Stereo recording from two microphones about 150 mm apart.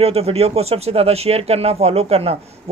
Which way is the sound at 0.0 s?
45° right (ahead or behind).